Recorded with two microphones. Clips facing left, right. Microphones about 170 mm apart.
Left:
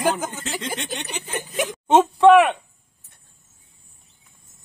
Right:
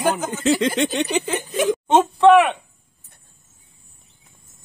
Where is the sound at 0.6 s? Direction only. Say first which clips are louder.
Right 10 dB; 90° right.